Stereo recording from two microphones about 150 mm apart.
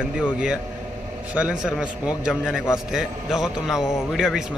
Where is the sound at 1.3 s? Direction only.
5° right (ahead or behind).